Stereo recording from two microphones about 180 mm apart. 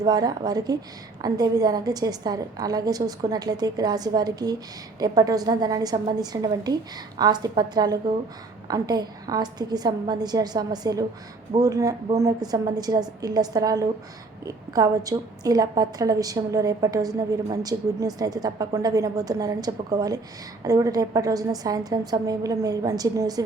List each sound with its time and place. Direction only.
0.0 s a woman's voice: 20° right (ahead or behind)